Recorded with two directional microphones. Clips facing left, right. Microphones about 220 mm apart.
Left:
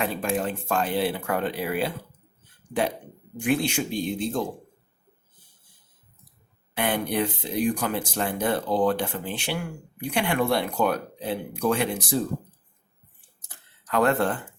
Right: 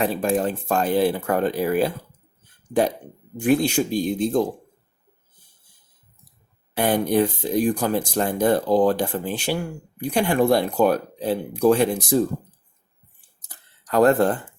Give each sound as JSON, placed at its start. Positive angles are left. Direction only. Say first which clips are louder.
{"t": 0.0, "sound": "speech", "louder": "right 5 dB", "side_deg": -35}
{"t": 3.4, "sound": "speech", "louder": "right 5 dB", "side_deg": -40}
{"t": 6.7, "sound": "speech", "louder": "right 6 dB", "side_deg": -40}
{"t": 13.5, "sound": "a sound", "louder": "right 4 dB", "side_deg": -40}